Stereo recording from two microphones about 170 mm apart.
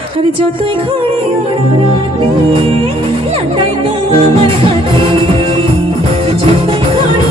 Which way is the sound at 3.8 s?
35° right (ahead or behind).